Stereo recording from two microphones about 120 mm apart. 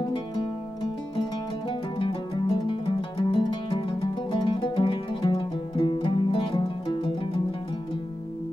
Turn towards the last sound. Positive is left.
turn(degrees=45)  # may be behind; listen again after turning